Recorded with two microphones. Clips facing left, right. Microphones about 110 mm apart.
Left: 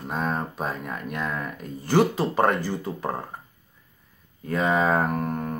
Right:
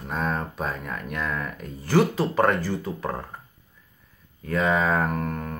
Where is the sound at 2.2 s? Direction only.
20° left (ahead or behind).